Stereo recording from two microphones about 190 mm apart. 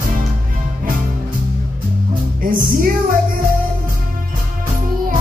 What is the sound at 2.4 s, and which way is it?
Music, 50° right (ahead or behind).